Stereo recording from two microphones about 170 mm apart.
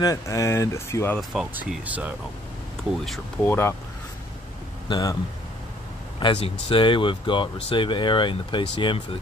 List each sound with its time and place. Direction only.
0.0 s speech: 20° left (ahead or behind)
1.3 s speech: 5° right (ahead or behind)
3.4 s speech: 15° left (ahead or behind)
4.8 s speech: 25° left (ahead or behind)
6.1 s speech: 30° left (ahead or behind)